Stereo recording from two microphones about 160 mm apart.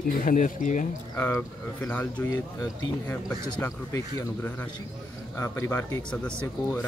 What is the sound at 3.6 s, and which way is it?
Speech, 15° left (ahead or behind).